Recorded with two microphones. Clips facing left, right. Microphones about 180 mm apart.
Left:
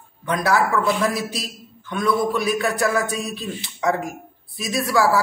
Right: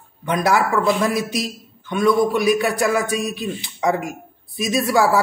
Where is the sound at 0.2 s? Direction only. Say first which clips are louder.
Right 2 dB; 15° right (ahead or behind).